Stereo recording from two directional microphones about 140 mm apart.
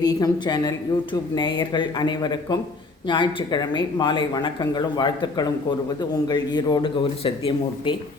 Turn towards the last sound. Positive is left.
turn(degrees=40)  # may be behind; listen again after turning